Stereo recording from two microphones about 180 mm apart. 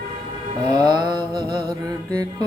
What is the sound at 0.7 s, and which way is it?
Music, 20° right (ahead or behind).